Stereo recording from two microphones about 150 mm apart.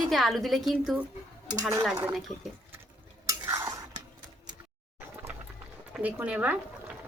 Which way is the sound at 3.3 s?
20° right (ahead or behind).